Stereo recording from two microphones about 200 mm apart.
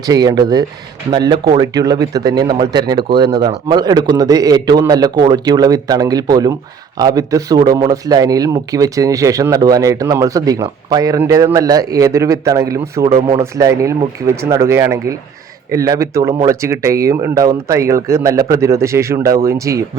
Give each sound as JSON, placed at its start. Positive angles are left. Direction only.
{"t": 0.0, "sound": "a man's voice", "side_deg": -20}